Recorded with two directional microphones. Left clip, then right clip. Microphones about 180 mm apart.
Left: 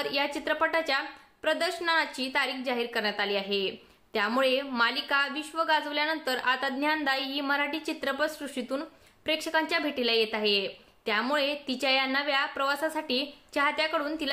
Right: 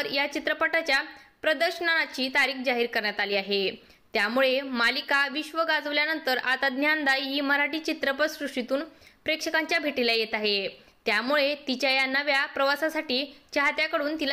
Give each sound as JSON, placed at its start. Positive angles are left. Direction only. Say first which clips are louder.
{"t": 0.0, "sound": "a woman's voice", "louder": "right 2 dB", "side_deg": -15}